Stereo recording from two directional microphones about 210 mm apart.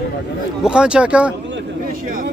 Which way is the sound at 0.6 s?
5° right (ahead or behind).